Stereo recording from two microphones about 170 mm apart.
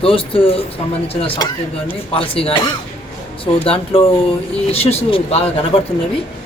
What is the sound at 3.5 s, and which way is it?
Speech, 35° left (ahead or behind).